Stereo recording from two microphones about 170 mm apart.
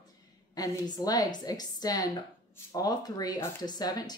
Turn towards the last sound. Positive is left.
turn(degrees=25)  # may be behind; listen again after turning